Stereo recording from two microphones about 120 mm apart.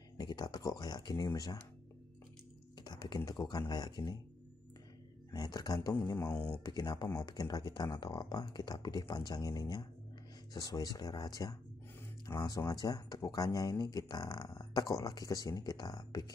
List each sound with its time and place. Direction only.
0.2 s speech: 35° left (ahead or behind)
2.8 s a sound: 35° left (ahead or behind)
3.3 s speech: 35° left (ahead or behind)
5.3 s speech: 35° left (ahead or behind)
6.1 s speech: 20° left (ahead or behind)
6.6 s speech: 30° left (ahead or behind)